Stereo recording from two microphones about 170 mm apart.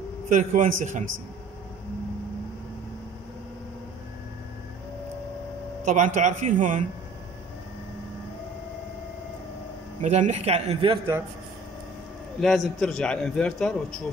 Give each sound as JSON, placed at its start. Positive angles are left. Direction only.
{"t": 0.3, "sound": "speech", "side_deg": -50}
{"t": 5.9, "sound": "speech", "side_deg": -45}
{"t": 10.0, "sound": "a man's voice", "side_deg": -45}
{"t": 12.4, "sound": "a man's voice", "side_deg": 0}